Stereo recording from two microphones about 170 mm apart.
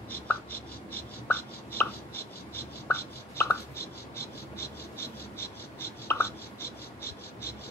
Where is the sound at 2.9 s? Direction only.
15° left (ahead or behind).